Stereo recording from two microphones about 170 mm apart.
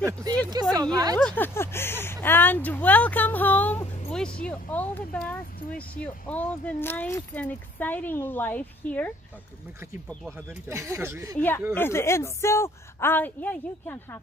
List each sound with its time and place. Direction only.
0.0 s speech: 20° right (ahead or behind)
1.1 s speech: 10° left (ahead or behind)
10.7 s speech: 15° right (ahead or behind)
11.3 s speech: 10° left (ahead or behind)